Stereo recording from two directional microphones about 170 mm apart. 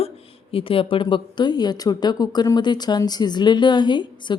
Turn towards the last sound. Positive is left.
turn(degrees=25)  # may be behind; listen again after turning